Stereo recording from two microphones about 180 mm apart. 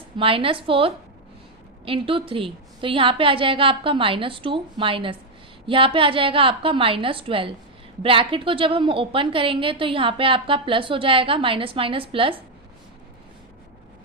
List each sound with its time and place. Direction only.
0.2 s a woman's voice: 30° right (ahead or behind)